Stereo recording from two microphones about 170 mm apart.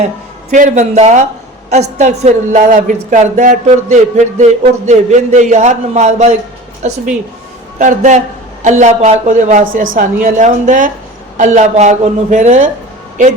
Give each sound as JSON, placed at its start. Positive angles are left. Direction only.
{"t": 0.5, "sound": "speech", "side_deg": -45}